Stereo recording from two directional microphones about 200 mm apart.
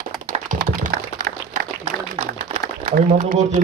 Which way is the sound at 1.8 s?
40° right (ahead or behind).